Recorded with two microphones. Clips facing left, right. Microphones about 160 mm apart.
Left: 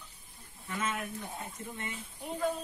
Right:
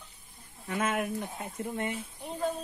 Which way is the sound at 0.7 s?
55° right (ahead or behind).